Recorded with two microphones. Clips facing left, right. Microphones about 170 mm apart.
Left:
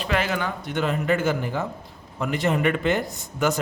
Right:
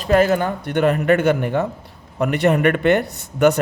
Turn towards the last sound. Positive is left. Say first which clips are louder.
# right 8 dB
turn(degrees=-65)  # may be behind; listen again after turning